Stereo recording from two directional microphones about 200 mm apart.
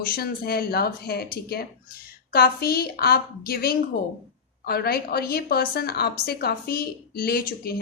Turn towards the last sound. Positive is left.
turn(degrees=50)  # may be behind; listen again after turning